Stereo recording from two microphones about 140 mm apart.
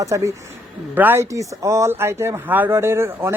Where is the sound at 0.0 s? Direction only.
20° right (ahead or behind).